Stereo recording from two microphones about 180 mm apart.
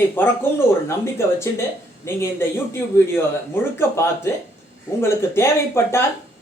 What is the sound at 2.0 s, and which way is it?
Speech, 15° left (ahead or behind).